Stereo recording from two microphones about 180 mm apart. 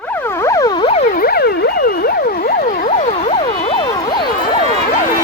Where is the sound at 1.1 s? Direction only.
55° left (ahead or behind); by 4.2 s 25° left (ahead or behind).